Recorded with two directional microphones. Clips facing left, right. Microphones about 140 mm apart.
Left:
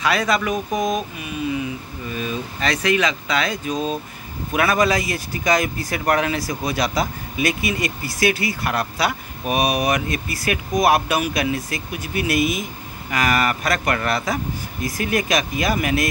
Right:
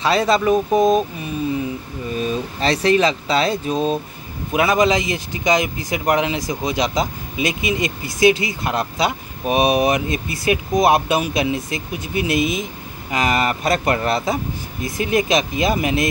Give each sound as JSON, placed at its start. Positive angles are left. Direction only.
{"t": 0.0, "sound": "speech", "side_deg": -30}
{"t": 4.5, "sound": "speech", "side_deg": -20}